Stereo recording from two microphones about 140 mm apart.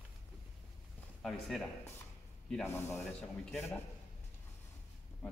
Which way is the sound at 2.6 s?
15° left (ahead or behind).